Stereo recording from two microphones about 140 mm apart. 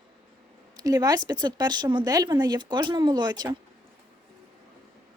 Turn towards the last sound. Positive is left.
turn(degrees=-30)  # may be behind; listen again after turning